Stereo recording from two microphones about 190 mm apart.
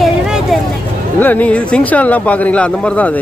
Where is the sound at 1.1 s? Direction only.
10° left (ahead or behind).